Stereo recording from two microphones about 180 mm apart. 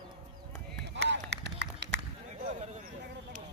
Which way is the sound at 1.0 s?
75° right (ahead or behind).